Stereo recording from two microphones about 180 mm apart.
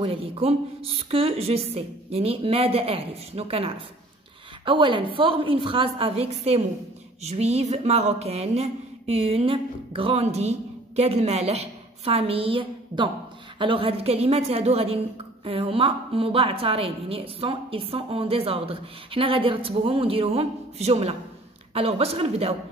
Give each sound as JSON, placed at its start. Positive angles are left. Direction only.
{"t": 0.0, "sound": "a woman's voice", "side_deg": -30}